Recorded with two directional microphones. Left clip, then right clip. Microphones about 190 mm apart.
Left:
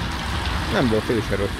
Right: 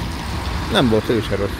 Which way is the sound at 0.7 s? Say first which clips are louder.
Right 5 dB; 15° right (ahead or behind).